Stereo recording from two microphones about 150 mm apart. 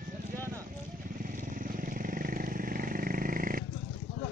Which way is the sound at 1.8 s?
70° right (ahead or behind).